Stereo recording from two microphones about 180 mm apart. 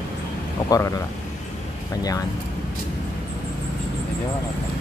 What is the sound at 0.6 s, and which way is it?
Speech, 20° left (ahead or behind).